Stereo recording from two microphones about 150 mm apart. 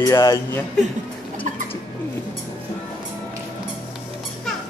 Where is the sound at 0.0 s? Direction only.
25° left (ahead or behind).